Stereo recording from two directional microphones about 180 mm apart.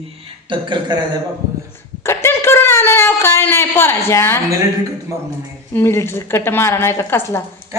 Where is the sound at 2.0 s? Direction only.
15° left (ahead or behind).